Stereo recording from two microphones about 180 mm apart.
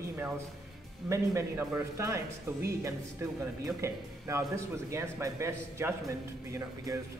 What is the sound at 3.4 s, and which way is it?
Speech, 15° right (ahead or behind).